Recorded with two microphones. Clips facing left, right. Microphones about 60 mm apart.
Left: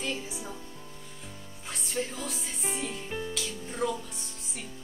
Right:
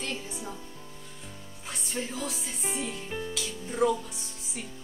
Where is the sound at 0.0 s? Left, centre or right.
Centre.